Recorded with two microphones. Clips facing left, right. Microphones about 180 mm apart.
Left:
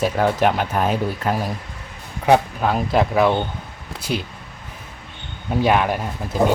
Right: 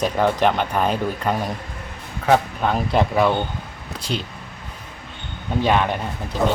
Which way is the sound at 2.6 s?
Centre (ahead or behind).